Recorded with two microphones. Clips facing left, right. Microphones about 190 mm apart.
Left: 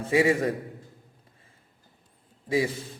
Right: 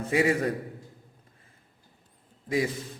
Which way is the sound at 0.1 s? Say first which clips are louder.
Left 3 dB; 25° left (ahead or behind).